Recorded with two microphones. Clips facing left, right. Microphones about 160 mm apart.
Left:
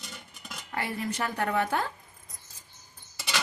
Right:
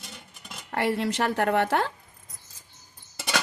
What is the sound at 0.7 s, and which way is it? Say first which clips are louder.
A woman's voice: right 7 dB; 85° right.